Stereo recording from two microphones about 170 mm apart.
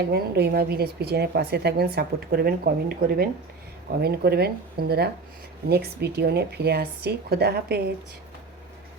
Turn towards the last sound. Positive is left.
turn(degrees=-70)  # may be behind; listen again after turning